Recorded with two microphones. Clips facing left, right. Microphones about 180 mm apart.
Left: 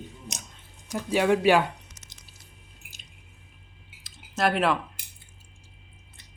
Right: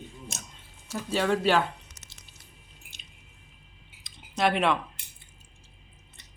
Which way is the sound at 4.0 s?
5° left (ahead or behind).